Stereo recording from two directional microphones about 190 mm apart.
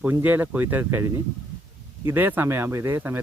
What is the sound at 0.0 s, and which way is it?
Speech, 10° right (ahead or behind).